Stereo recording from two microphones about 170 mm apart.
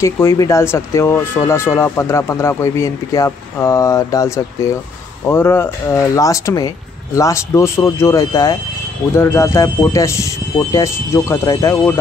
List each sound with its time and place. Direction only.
0.0 s speech: 15° left (ahead or behind)